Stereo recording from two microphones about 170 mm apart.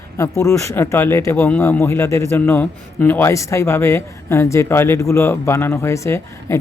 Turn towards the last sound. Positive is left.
turn(degrees=15)  # may be behind; listen again after turning